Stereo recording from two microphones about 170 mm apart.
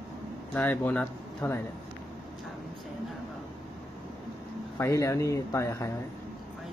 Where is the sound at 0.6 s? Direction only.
10° left (ahead or behind).